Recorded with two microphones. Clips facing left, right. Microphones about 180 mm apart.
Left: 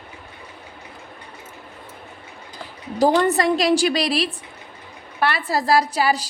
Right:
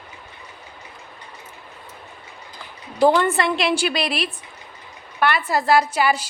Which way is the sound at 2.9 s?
40° left (ahead or behind).